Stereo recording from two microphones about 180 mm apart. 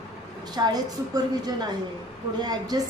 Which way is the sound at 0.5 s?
20° right (ahead or behind).